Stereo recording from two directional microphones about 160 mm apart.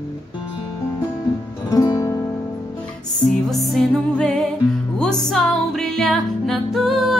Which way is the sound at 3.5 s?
Centre (ahead or behind).